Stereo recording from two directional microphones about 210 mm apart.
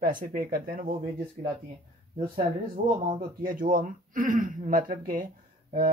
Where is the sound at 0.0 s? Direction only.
40° right (ahead or behind).